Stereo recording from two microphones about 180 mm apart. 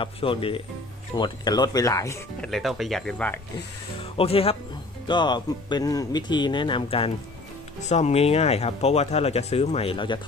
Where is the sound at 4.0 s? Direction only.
30° left (ahead or behind).